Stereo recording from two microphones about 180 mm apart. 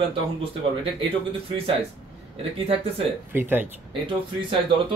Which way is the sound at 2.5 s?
35° right (ahead or behind).